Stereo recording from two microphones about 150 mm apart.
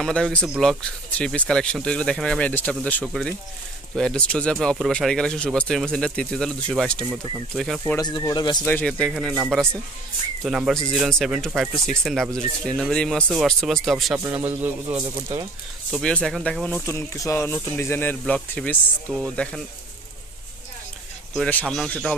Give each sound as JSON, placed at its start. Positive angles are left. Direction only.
{"t": 0.0, "sound": "speech", "side_deg": 5}
{"t": 8.0, "sound": "speech", "side_deg": 25}
{"t": 8.6, "sound": "speech", "side_deg": 10}
{"t": 10.4, "sound": "speech", "side_deg": 0}
{"t": 14.2, "sound": "a man's voice", "side_deg": -15}
{"t": 15.0, "sound": "speech", "side_deg": -30}
{"t": 15.9, "sound": "speech", "side_deg": 5}
{"t": 16.8, "sound": "speech", "side_deg": 20}
{"t": 21.3, "sound": "speech", "side_deg": 5}